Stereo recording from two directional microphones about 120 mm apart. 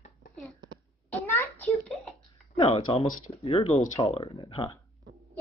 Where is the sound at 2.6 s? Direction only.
55° left (ahead or behind).